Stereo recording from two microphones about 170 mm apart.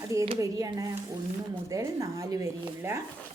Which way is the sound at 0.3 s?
20° right (ahead or behind).